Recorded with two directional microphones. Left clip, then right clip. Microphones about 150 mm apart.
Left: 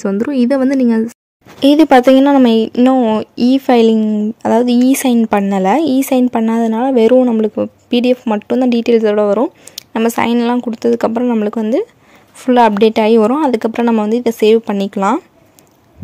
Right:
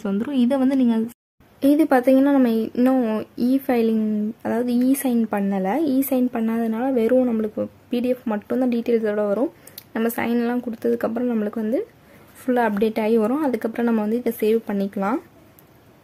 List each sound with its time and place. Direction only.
0.1 s speech: 30° left (ahead or behind)